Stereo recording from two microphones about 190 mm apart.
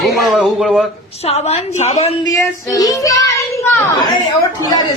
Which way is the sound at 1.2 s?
35° left (ahead or behind).